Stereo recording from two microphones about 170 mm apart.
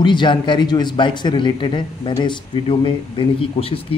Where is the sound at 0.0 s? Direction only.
25° left (ahead or behind).